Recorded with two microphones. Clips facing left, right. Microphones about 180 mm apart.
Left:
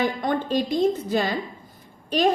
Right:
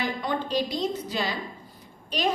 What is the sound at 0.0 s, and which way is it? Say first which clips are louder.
A woman's voice: left 5 dB; 45° left (ahead or behind).